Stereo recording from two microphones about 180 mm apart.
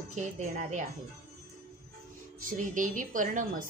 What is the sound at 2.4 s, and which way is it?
A woman's voice, 50° right (ahead or behind).